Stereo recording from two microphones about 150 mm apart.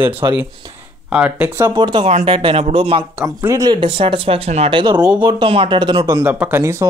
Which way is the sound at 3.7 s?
35° right (ahead or behind).